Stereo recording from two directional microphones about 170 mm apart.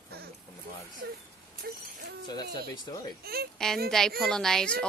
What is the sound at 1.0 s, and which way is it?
Speech, 65° right (ahead or behind).